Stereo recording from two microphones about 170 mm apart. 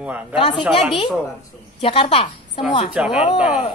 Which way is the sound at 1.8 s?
35° left (ahead or behind).